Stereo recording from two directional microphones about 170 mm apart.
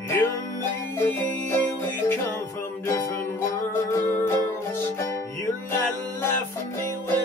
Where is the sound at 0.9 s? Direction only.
10° left (ahead or behind).